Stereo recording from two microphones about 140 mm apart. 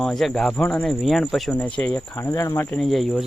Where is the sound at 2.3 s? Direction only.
20° left (ahead or behind).